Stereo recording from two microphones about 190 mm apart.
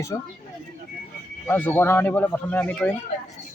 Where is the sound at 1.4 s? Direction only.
10° left (ahead or behind).